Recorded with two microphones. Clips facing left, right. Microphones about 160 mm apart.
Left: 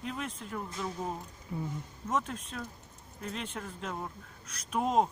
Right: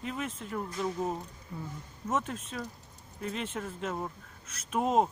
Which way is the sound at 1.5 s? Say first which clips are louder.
Left 4 dB; 20° left (ahead or behind).